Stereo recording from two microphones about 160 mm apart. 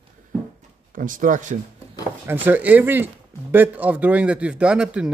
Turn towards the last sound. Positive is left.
turn(degrees=-5)  # may be behind; listen again after turning